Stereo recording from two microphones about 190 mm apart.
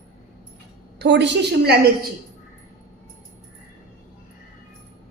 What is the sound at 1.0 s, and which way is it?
Speech, 65° right (ahead or behind).